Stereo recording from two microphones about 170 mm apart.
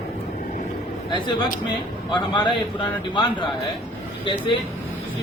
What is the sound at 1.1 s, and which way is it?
A man's voice, 25° left (ahead or behind).